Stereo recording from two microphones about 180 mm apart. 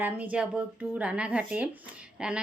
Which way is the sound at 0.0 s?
10° right (ahead or behind).